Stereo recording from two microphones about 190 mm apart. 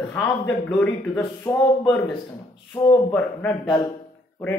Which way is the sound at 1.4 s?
20° left (ahead or behind).